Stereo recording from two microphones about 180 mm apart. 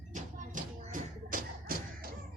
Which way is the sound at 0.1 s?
45° right (ahead or behind).